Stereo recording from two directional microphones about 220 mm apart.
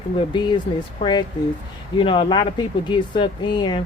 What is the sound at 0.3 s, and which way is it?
Speech, 20° left (ahead or behind).